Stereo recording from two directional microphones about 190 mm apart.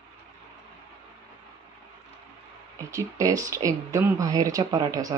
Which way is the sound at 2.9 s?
15° right (ahead or behind).